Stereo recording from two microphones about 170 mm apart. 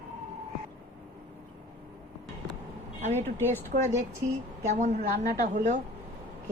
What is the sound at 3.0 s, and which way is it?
A woman's voice, 40° right (ahead or behind).